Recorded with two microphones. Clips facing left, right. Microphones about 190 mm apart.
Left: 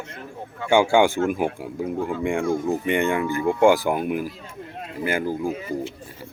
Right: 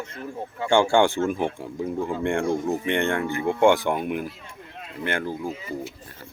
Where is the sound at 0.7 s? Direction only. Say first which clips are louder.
Left 2 dB; 5° left (ahead or behind).